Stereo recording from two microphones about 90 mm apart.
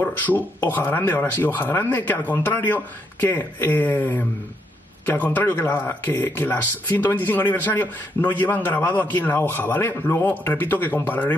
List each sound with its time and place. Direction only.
0.0 s speech: 20° left (ahead or behind)